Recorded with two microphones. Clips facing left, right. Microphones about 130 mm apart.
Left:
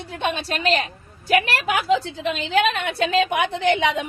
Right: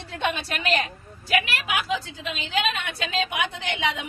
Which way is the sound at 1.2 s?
65° left (ahead or behind).